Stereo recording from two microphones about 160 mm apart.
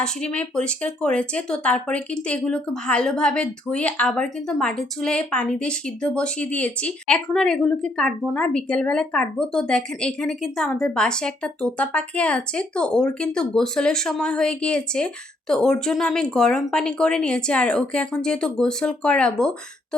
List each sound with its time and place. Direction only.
0.0 s speech: 5° left (ahead or behind)